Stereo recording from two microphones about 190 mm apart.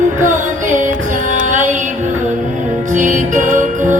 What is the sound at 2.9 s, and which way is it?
Music, 40° right (ahead or behind).